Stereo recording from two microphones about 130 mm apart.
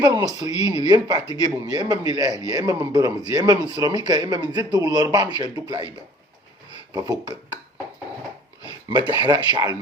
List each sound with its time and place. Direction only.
0.0 s speech: 30° right (ahead or behind)
6.9 s speech: 30° right (ahead or behind)
8.6 s speech: 35° right (ahead or behind)